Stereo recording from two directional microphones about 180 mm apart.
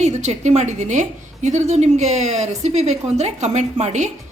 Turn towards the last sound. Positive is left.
turn(degrees=-40)  # may be behind; listen again after turning